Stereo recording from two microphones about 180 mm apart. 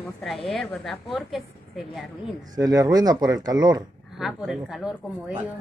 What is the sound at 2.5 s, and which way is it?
Speech, 20° right (ahead or behind).